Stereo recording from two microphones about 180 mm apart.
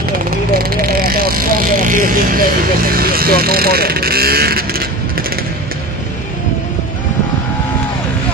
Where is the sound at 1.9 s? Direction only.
50° right (ahead or behind).